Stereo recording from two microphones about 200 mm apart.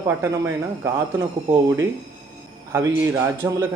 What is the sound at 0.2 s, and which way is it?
A man's voice, 10° right (ahead or behind).